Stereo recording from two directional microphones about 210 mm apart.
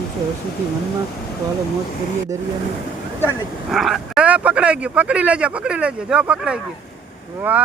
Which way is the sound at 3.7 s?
Centre (ahead or behind).